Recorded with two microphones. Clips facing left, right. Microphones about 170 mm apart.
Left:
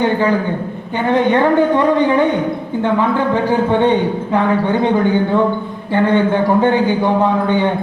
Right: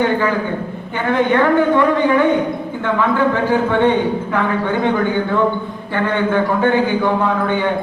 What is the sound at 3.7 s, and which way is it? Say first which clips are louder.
A man's voice: left 1 dB; 20° left (ahead or behind).